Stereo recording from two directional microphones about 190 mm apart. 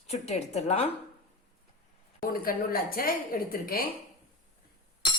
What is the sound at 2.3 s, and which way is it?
A woman's voice, 50° left (ahead or behind).